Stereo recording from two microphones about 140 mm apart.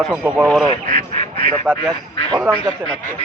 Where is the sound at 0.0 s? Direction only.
5° right (ahead or behind).